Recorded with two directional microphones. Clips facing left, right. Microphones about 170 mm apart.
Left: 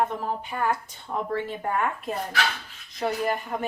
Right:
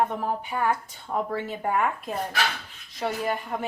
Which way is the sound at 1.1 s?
10° right (ahead or behind).